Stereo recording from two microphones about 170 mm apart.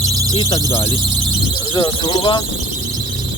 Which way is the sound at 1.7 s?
30° left (ahead or behind).